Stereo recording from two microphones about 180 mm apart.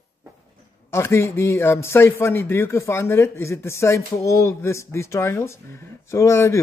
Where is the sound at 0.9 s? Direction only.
15° left (ahead or behind).